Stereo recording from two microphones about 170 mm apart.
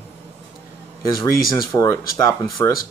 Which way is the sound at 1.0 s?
20° left (ahead or behind).